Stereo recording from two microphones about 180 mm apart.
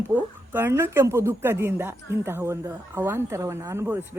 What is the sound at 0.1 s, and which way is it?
Speech, 10° right (ahead or behind).